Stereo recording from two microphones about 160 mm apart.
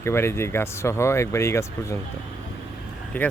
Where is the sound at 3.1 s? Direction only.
10° left (ahead or behind).